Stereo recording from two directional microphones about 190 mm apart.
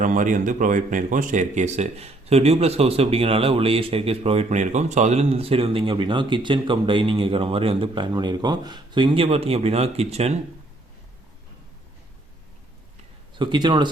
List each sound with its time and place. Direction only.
0.0 s speech: 45° right (ahead or behind)
13.4 s speech: 25° right (ahead or behind)